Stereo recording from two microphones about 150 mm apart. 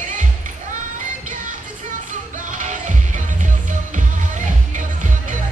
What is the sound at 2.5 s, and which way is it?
Music, 55° right (ahead or behind).